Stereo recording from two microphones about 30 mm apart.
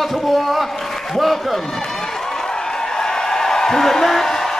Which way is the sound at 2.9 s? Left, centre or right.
Left.